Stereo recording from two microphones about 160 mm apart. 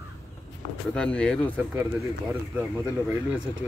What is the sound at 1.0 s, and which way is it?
Speech, 5° left (ahead or behind).